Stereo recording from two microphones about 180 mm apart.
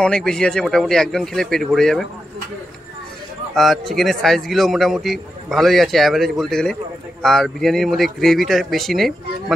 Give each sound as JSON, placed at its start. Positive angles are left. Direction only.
{"t": 0.0, "sound": "a man's voice", "side_deg": 5}
{"t": 3.5, "sound": "a man's voice", "side_deg": 0}